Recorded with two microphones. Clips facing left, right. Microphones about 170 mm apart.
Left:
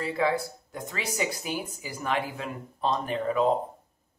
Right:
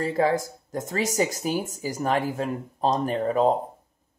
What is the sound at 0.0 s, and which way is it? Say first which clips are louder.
Speech: right 4 dB; 40° right (ahead or behind).